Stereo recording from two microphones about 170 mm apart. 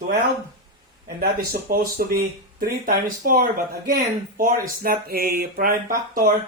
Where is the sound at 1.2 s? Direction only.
60° right (ahead or behind).